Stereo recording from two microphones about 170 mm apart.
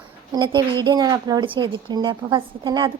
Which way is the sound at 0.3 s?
30° right (ahead or behind).